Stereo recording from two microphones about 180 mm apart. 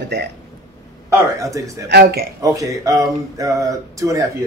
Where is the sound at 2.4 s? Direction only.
20° right (ahead or behind).